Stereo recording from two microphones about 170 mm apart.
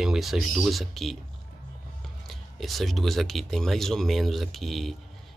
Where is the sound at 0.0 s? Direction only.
Centre (ahead or behind).